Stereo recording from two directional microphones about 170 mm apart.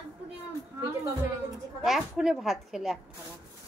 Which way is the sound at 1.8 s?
Centre (ahead or behind).